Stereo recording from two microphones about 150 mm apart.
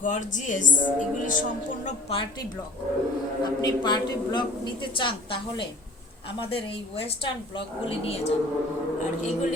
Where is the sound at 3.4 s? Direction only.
30° left (ahead or behind).